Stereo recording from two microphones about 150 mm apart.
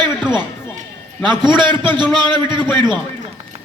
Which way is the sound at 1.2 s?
30° right (ahead or behind).